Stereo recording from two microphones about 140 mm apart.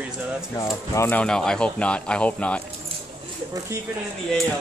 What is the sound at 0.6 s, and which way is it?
Speech, 20° left (ahead or behind).